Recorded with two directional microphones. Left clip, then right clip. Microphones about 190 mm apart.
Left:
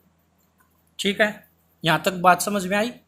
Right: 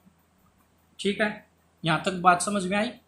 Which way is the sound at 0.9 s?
55° left (ahead or behind).